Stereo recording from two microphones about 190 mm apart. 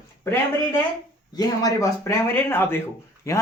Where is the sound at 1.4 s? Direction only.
20° left (ahead or behind).